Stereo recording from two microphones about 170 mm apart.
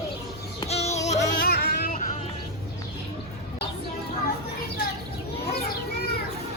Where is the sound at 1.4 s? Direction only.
65° left (ahead or behind).